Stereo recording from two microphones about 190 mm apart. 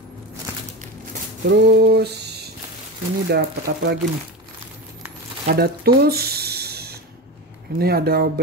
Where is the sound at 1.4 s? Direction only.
65° right (ahead or behind).